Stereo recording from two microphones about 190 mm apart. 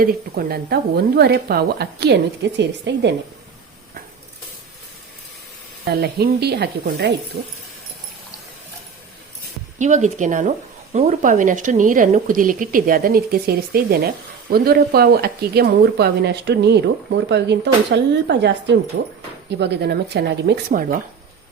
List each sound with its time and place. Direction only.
0.0 s speech: 50° right (ahead or behind); by 3.1 s 65° right (ahead or behind)
5.8 s speech: 55° right (ahead or behind)
7.3 s speech: 80° right
9.7 s a woman's voice: 40° right (ahead or behind)